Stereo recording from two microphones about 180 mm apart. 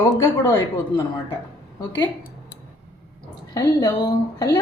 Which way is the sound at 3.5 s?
15° left (ahead or behind).